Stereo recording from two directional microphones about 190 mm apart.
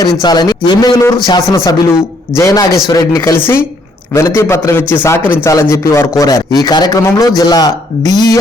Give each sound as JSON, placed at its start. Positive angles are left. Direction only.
{"t": 0.0, "sound": "a man's voice", "side_deg": 20}